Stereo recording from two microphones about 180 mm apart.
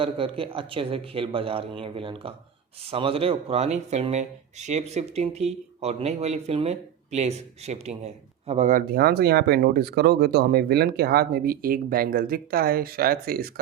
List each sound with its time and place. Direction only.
0.0 s speech: 30° right (ahead or behind); by 13.5 s 55° right (ahead or behind)